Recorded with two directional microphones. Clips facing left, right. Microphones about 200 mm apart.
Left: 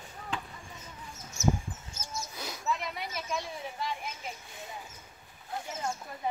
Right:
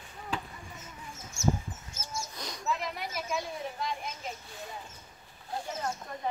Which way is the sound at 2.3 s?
5° left (ahead or behind).